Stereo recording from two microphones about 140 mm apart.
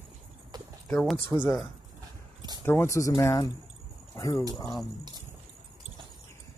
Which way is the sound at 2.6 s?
15° left (ahead or behind).